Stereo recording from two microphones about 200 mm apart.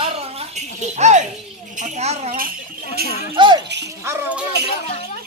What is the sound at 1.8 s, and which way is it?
Speech, 35° right (ahead or behind).